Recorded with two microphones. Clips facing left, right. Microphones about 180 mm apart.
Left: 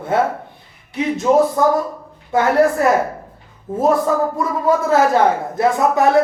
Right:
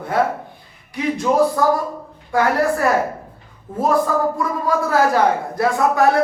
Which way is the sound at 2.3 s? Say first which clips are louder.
Left 3 dB; 20° left (ahead or behind).